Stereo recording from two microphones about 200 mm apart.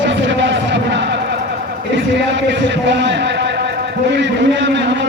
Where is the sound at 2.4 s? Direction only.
65° right (ahead or behind).